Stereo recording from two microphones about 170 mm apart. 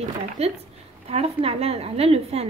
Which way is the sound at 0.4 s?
40° right (ahead or behind).